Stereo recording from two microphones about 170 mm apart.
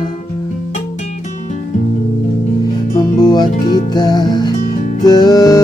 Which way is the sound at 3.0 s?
25° left (ahead or behind).